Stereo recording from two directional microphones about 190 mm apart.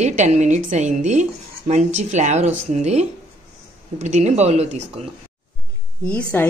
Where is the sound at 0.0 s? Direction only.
40° right (ahead or behind).